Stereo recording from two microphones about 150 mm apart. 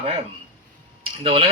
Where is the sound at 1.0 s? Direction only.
35° right (ahead or behind).